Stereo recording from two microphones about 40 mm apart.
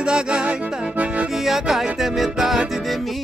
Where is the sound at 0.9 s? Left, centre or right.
Right.